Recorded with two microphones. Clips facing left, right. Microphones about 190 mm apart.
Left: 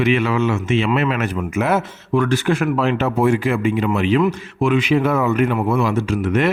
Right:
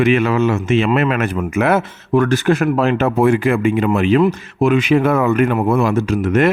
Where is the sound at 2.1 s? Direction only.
45° right (ahead or behind).